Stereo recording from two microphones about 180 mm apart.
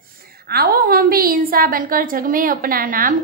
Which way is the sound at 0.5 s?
55° right (ahead or behind).